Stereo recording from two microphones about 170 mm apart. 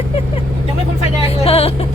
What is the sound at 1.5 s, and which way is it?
Speech, 35° left (ahead or behind).